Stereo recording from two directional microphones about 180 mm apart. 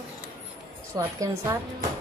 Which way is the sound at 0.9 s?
15° right (ahead or behind).